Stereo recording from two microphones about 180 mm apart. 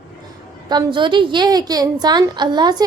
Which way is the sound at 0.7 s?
25° right (ahead or behind).